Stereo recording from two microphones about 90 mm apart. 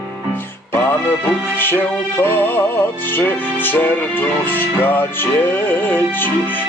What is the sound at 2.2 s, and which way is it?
Music, 25° left (ahead or behind).